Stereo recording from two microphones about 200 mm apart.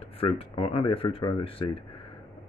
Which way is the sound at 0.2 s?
30° left (ahead or behind).